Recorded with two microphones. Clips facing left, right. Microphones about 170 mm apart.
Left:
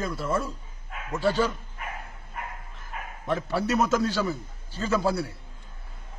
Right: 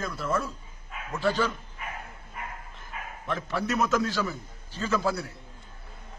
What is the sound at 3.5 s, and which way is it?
A man's voice, 35° left (ahead or behind).